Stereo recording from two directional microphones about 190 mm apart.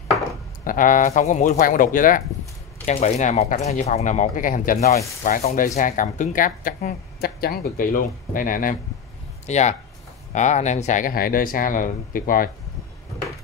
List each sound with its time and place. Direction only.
0.7 s speech: 45° left (ahead or behind)